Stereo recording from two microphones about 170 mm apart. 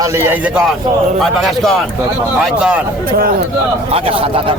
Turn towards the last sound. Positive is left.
turn(degrees=-35)  # may be behind; listen again after turning